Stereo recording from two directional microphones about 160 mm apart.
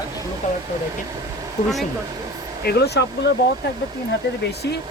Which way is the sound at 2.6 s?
90° left.